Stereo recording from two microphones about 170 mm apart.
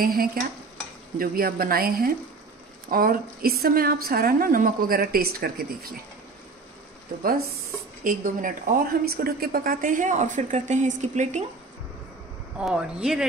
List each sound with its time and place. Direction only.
0.0 s a woman's voice: 60° right (ahead or behind)
8.0 s speech: 55° right (ahead or behind)
12.5 s speech: 5° right (ahead or behind)